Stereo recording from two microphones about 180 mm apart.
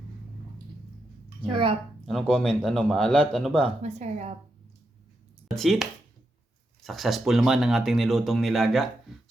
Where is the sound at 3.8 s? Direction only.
40° right (ahead or behind).